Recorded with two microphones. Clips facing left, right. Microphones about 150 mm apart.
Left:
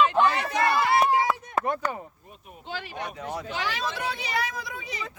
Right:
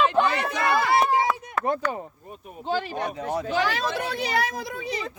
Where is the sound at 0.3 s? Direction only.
60° right (ahead or behind).